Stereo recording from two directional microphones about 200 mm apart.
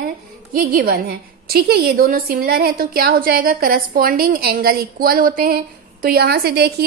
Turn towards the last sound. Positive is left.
turn(degrees=-55)  # may be behind; listen again after turning